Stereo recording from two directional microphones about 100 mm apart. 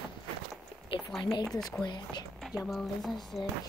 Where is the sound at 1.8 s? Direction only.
45° left (ahead or behind).